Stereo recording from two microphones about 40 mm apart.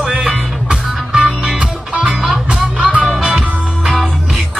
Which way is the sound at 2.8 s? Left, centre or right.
Right.